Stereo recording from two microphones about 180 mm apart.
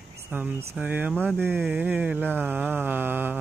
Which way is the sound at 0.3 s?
10° right (ahead or behind).